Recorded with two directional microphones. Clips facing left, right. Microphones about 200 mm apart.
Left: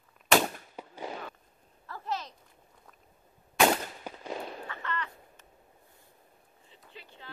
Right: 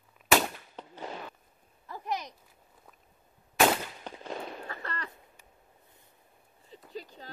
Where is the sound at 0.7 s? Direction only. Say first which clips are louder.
Left 1 dB; 10° left (ahead or behind).